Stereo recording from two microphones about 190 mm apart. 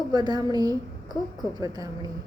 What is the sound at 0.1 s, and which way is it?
A woman's voice, 20° right (ahead or behind).